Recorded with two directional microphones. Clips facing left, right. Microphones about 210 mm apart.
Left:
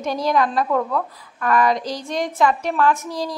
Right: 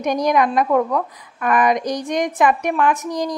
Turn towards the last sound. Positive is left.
turn(degrees=-15)  # may be behind; listen again after turning